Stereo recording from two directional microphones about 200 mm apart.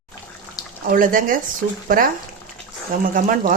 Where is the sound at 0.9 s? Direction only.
45° right (ahead or behind).